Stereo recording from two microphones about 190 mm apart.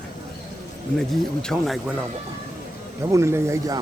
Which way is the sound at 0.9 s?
5° left (ahead or behind).